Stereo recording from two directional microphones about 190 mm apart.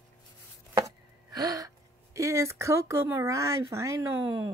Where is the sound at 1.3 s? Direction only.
20° right (ahead or behind).